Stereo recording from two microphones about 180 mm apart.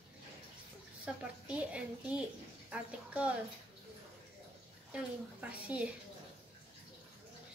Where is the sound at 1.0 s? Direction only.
5° right (ahead or behind).